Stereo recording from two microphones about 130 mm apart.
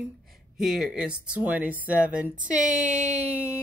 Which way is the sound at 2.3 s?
80° right.